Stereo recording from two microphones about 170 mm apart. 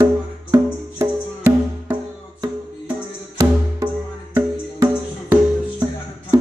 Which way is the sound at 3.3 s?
20° right (ahead or behind).